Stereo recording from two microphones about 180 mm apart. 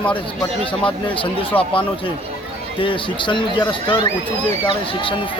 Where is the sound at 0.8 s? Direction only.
30° left (ahead or behind).